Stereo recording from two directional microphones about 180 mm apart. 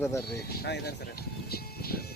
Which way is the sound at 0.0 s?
15° left (ahead or behind).